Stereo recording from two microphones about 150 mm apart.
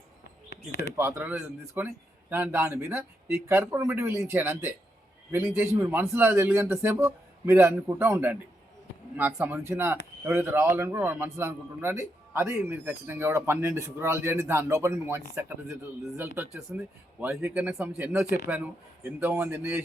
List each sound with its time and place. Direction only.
0.9 s speech: 15° right (ahead or behind)
5.8 s speech: 15° right (ahead or behind)